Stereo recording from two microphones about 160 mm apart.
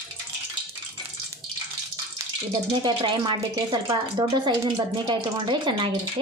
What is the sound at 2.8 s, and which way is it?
Speech, 30° right (ahead or behind).